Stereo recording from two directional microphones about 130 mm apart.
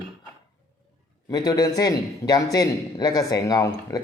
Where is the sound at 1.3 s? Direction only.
30° left (ahead or behind).